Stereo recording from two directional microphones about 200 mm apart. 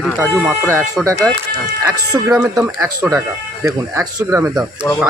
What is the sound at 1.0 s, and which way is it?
Speech, centre (ahead or behind).